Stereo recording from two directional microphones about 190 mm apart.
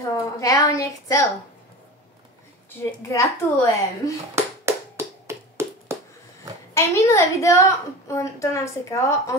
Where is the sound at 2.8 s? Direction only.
15° left (ahead or behind).